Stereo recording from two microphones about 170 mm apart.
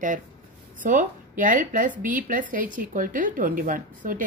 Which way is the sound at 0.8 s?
50° right (ahead or behind).